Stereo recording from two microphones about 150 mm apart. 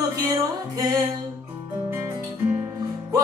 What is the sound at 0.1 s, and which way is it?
Music, 25° right (ahead or behind).